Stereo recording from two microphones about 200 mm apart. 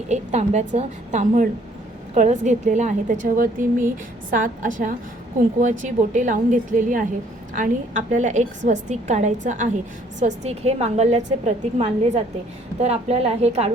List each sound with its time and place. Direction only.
0.1 s a woman's voice: 35° right (ahead or behind)